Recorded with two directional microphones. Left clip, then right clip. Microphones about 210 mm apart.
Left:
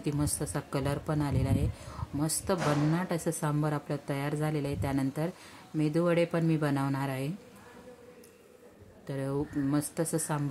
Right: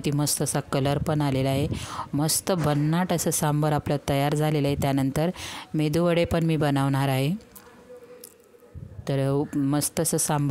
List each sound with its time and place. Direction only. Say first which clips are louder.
0.0 s speech: right 7 dB; 45° right (ahead or behind)
9.0 s speech: right 8 dB; 45° right (ahead or behind)